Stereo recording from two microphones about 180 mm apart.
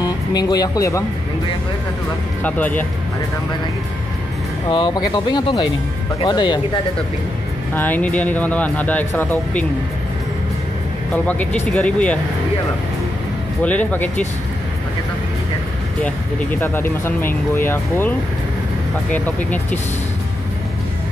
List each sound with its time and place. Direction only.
0.0 s speech: 20° left (ahead or behind)
2.4 s speech: 10° left (ahead or behind)
4.6 s speech: 25° left (ahead or behind)
7.7 s speech: 10° left (ahead or behind)
11.7 s speech: 5° left (ahead or behind)
13.6 s speech: 10° left (ahead or behind)
16.0 s speech: 10° left (ahead or behind)
19.1 s speech: 10° left (ahead or behind)